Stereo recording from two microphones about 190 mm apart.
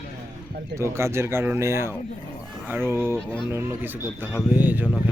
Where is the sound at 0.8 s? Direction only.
15° right (ahead or behind).